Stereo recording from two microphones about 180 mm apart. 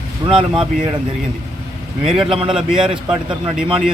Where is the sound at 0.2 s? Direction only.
20° right (ahead or behind).